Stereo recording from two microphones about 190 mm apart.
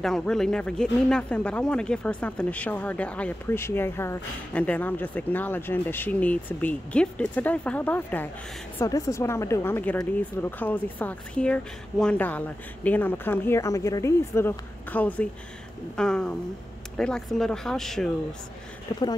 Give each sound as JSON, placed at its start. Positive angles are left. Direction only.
{"t": 0.0, "sound": "speech", "side_deg": 0}
{"t": 18.9, "sound": "speech", "side_deg": 15}